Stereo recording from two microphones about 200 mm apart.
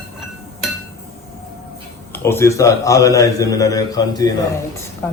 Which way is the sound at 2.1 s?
10° left (ahead or behind).